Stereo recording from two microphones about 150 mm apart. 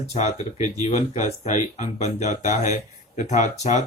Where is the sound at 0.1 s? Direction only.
45° left (ahead or behind).